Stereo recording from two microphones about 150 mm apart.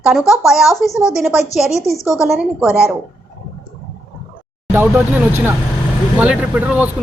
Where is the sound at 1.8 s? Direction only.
20° left (ahead or behind).